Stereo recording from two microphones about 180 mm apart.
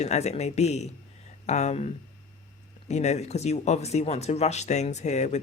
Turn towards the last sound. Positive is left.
turn(degrees=40)  # may be behind; listen again after turning